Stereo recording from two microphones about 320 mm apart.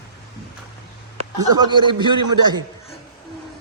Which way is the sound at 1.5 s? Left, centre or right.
Centre.